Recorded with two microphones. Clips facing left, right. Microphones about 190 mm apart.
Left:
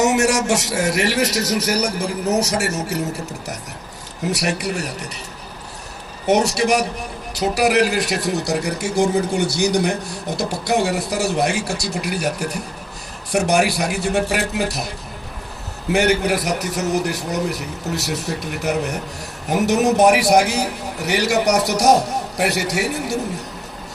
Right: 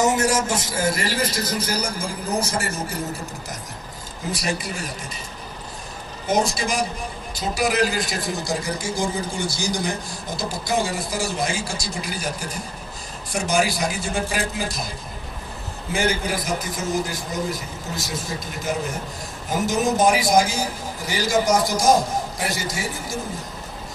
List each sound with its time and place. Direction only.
0.0 s a man's voice: 75° left (ahead or behind)
4.3 s a man's voice: 70° left (ahead or behind)
6.2 s a man's voice: 70° left (ahead or behind)
15.9 s a man's voice: 65° left (ahead or behind)